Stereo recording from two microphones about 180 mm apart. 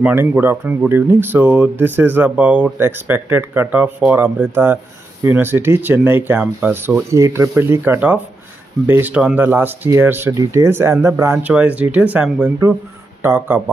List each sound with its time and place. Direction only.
0.0 s speech: 10° right (ahead or behind)